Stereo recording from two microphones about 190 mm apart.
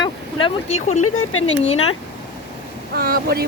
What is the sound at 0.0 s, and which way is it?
Speech, 25° left (ahead or behind).